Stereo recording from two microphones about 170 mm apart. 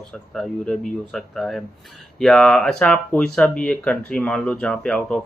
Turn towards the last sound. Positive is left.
turn(degrees=5)  # may be behind; listen again after turning